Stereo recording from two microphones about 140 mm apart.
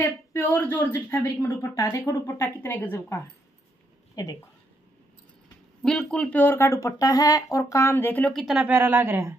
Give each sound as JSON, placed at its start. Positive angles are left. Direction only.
{"t": 0.0, "sound": "speech", "side_deg": 15}
{"t": 5.8, "sound": "speech", "side_deg": 5}
{"t": 8.3, "sound": "speech", "side_deg": 0}